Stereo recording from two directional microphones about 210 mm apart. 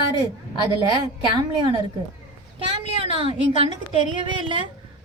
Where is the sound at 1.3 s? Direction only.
20° right (ahead or behind).